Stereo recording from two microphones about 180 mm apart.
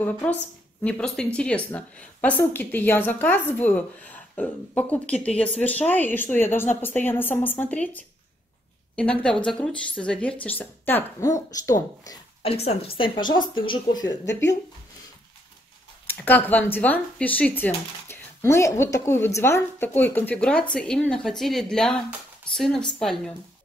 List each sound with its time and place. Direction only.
0.0 s a woman's voice: 10° left (ahead or behind)
12.4 s speech: 35° left (ahead or behind); by 14.6 s 15° left (ahead or behind)
16.1 s a woman's voice: 10° left (ahead or behind)